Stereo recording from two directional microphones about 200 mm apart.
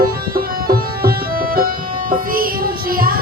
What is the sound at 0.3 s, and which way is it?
Music, 50° right (ahead or behind).